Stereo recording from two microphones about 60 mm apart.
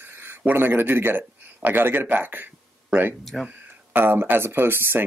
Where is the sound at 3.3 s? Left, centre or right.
Centre.